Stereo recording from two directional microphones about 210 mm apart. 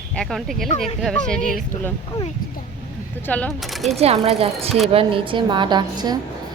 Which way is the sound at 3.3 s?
5° left (ahead or behind).